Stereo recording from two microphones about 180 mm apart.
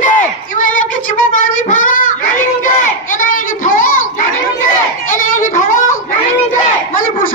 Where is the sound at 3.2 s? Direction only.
50° left (ahead or behind).